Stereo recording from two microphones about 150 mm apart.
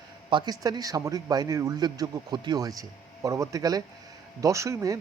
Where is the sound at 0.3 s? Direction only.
30° right (ahead or behind).